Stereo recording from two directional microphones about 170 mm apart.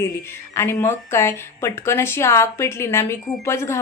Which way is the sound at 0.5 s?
15° left (ahead or behind).